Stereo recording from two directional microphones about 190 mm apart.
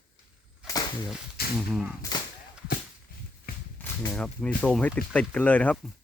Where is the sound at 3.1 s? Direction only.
50° left (ahead or behind).